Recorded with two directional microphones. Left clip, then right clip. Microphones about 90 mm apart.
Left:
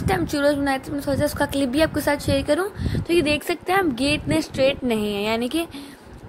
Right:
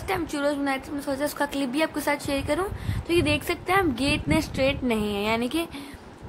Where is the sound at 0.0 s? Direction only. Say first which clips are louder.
Left 6 dB; 45° left (ahead or behind).